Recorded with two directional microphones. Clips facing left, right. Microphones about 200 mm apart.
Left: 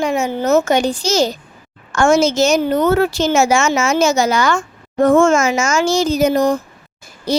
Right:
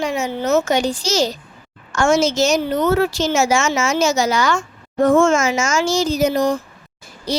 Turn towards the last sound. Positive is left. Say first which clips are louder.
# left 4 dB
turn(degrees=50)  # may be behind; listen again after turning